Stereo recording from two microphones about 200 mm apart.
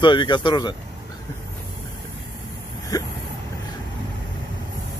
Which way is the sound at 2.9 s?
20° left (ahead or behind).